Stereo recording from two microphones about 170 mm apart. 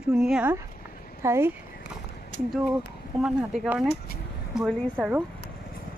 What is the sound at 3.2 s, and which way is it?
Speech, 5° right (ahead or behind).